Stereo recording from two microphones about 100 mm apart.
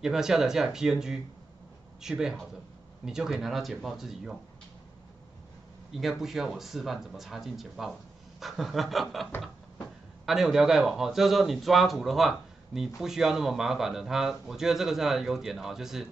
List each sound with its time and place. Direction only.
0.0 s a man's voice: 5° right (ahead or behind)
5.9 s a man's voice: centre (ahead or behind)